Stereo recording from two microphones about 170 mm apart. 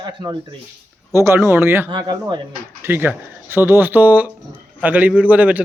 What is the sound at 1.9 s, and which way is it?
Speech, 25° right (ahead or behind).